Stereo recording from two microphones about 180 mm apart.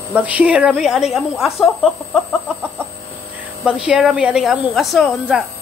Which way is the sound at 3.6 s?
5° right (ahead or behind).